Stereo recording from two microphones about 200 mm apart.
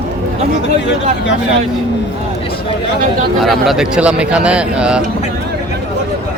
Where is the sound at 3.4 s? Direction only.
Centre (ahead or behind).